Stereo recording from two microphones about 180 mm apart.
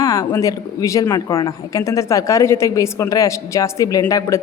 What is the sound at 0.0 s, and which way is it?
Speech, 20° left (ahead or behind).